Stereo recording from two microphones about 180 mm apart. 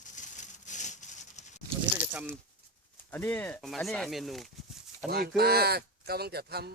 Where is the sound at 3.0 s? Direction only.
10° left (ahead or behind).